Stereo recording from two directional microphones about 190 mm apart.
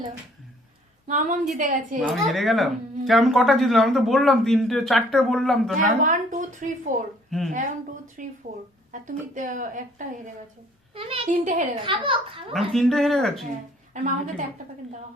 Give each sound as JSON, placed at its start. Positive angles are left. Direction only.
{"t": 1.0, "sound": "a child's voice", "side_deg": -40}
{"t": 2.0, "sound": "speech", "side_deg": 0}
{"t": 6.0, "sound": "a woman's voice", "side_deg": -40}
{"t": 7.3, "sound": "speech", "side_deg": 0}
{"t": 8.2, "sound": "a woman's voice", "side_deg": -45}
{"t": 10.9, "sound": "a child's voice", "side_deg": -30}
{"t": 11.8, "sound": "a child's voice", "side_deg": -25}
{"t": 12.5, "sound": "speech", "side_deg": 0}
{"t": 13.9, "sound": "a child's voice", "side_deg": -40}